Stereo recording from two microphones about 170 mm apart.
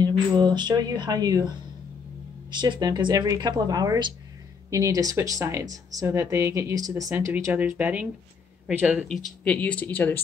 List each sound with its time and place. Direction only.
0.3 s speech: 25° right (ahead or behind)
2.5 s speech: 25° right (ahead or behind); by 9.0 s 10° right (ahead or behind)
9.1 s speech: 5° left (ahead or behind)